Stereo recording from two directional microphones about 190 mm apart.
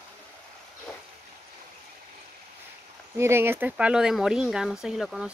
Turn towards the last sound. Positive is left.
turn(degrees=0)  # may be behind; listen again after turning